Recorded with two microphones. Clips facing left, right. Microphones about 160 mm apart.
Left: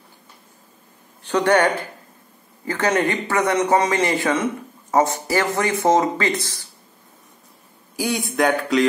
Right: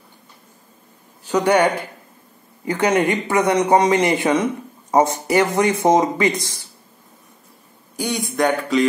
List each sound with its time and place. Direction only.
1.2 s a man's voice: 10° right (ahead or behind)
7.9 s a man's voice: centre (ahead or behind)